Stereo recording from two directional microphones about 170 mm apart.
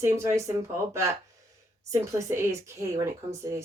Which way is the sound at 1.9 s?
20° right (ahead or behind).